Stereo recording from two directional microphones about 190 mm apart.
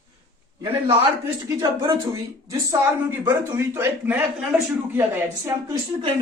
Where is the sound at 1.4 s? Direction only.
20° right (ahead or behind).